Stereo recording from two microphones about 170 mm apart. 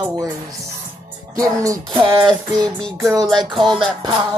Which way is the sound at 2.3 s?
5° left (ahead or behind).